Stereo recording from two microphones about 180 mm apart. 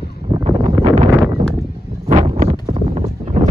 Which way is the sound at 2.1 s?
40° right (ahead or behind).